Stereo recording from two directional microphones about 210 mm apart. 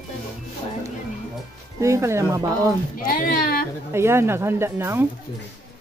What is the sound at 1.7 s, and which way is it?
Speech, 15° right (ahead or behind).